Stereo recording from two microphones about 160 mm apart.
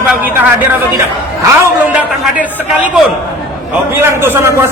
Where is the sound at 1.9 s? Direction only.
10° right (ahead or behind).